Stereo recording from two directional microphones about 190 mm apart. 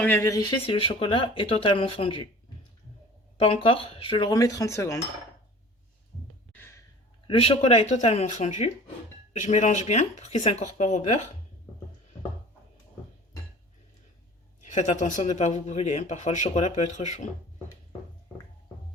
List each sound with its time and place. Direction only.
0.0 s speech: 10° left (ahead or behind); by 2.2 s 30° left (ahead or behind)
3.3 s speech: 30° left (ahead or behind); by 4.9 s 15° left (ahead or behind)
6.5 s a sound: 10° left (ahead or behind)
7.3 s speech: 30° left (ahead or behind)
14.6 s speech: 40° left (ahead or behind)